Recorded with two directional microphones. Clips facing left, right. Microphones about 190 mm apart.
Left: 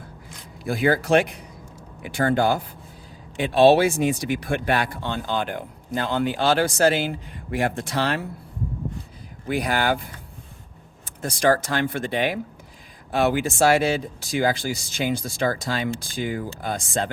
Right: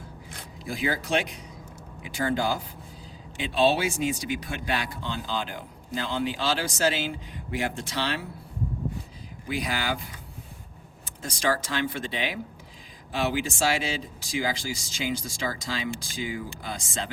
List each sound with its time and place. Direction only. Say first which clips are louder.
0.6 s speech: left 8 dB; 65° left (ahead or behind)
9.5 s speech: left 7 dB; 55° left (ahead or behind)
11.0 s speech: left 7 dB; 55° left (ahead or behind)